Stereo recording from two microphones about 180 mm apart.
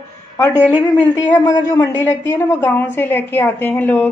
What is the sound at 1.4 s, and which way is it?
A woman's voice, 20° left (ahead or behind).